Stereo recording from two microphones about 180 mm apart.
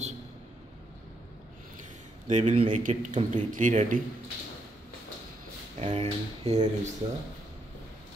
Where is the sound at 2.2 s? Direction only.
40° right (ahead or behind).